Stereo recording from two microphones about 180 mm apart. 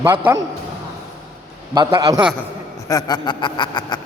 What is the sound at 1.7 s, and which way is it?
Speech, 20° right (ahead or behind).